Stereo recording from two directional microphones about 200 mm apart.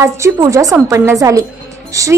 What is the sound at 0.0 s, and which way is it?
A woman's voice, 15° right (ahead or behind).